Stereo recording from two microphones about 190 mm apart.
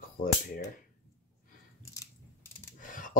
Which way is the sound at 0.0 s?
45° left (ahead or behind).